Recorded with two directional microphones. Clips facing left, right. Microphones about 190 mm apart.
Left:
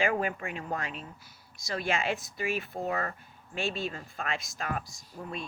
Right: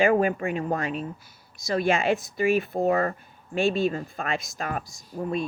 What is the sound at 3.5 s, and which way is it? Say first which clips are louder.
Speech: right 10 dB; 55° right (ahead or behind).